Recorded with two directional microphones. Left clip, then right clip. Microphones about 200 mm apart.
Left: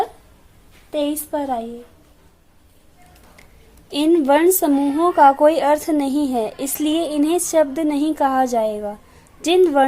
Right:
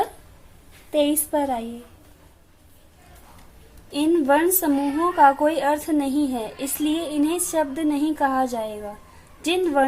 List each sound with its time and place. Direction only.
0.9 s a woman's voice: 20° left (ahead or behind)
3.9 s a woman's voice: 45° left (ahead or behind)